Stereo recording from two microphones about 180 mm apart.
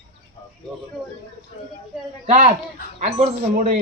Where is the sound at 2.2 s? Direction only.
40° right (ahead or behind).